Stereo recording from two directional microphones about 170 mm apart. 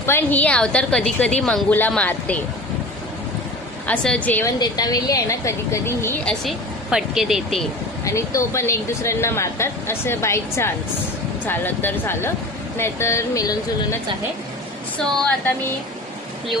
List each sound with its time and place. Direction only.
0.0 s speech: 15° left (ahead or behind)
3.8 s speech: 5° left (ahead or behind)
4.6 s a woman's voice: 20° left (ahead or behind)
6.9 s speech: 5° right (ahead or behind)
8.0 s speech: 20° left (ahead or behind)